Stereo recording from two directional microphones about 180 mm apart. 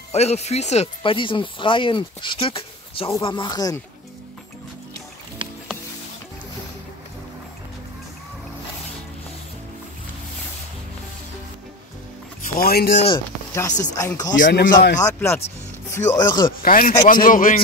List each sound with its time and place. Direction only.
0.1 s speech: 35° left (ahead or behind); by 3.8 s 20° left (ahead or behind)
12.5 s speech: 55° left (ahead or behind)
13.1 s speech: 20° left (ahead or behind)
14.5 s speech: 50° left (ahead or behind)
15.1 s speech: 15° left (ahead or behind)
16.1 s speech: 25° left (ahead or behind)
16.4 s speech: 50° left (ahead or behind)